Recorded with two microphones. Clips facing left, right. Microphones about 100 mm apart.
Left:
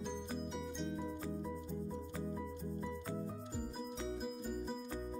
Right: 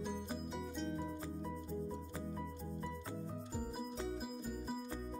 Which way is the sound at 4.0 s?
Centre (ahead or behind).